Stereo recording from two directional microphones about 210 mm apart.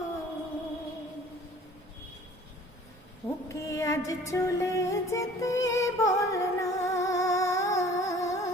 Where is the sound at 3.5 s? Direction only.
15° left (ahead or behind).